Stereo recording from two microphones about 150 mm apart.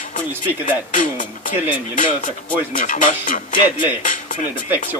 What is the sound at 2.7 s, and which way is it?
Speech, 60° left (ahead or behind).